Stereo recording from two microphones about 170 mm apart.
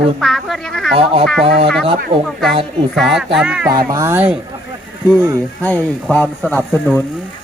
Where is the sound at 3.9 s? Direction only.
20° right (ahead or behind).